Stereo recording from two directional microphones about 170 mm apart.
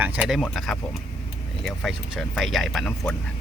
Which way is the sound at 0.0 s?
5° right (ahead or behind).